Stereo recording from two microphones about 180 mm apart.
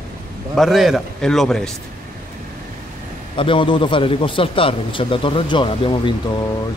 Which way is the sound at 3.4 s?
30° left (ahead or behind).